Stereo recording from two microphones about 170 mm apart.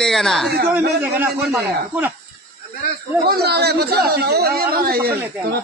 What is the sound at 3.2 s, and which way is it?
A man's voice, 70° right (ahead or behind).